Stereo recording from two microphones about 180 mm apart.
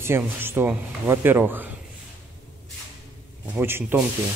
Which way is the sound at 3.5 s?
10° right (ahead or behind).